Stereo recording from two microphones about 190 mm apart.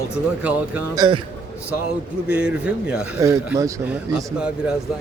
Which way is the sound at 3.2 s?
15° right (ahead or behind).